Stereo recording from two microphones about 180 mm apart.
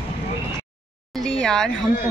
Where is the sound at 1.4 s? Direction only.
5° left (ahead or behind).